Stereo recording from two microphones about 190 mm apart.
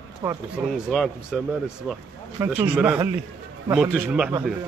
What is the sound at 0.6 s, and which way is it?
Speech, 5° right (ahead or behind).